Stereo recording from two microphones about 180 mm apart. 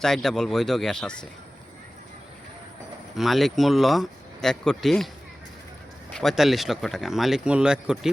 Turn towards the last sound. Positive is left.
turn(degrees=-5)  # may be behind; listen again after turning